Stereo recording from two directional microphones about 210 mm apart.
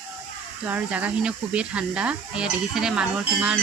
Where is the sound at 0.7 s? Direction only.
5° right (ahead or behind).